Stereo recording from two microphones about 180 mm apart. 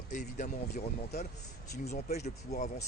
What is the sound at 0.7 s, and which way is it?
Speech, 60° left (ahead or behind).